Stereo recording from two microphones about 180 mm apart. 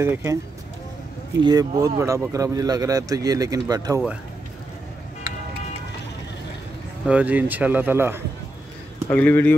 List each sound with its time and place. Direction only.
0.0 s speech: 15° right (ahead or behind)
1.4 s speech: 20° right (ahead or behind)
7.1 s speech: 10° right (ahead or behind)
9.1 s speech: 10° left (ahead or behind)